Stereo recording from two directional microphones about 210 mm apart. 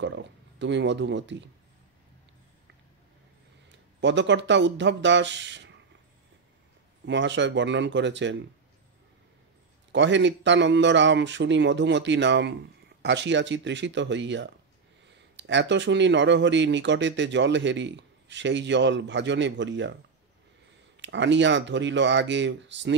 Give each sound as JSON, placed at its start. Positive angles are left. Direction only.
{"t": 0.0, "sound": "speech", "side_deg": -60}
{"t": 4.0, "sound": "speech", "side_deg": -60}
{"t": 7.1, "sound": "speech", "side_deg": -60}
{"t": 9.9, "sound": "speech", "side_deg": -60}
{"t": 21.0, "sound": "speech", "side_deg": -60}